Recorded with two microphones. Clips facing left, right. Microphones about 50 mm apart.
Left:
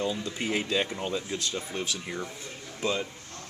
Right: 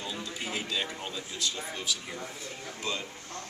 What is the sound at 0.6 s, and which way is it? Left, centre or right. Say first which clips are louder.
Speech: left 4 dB; centre.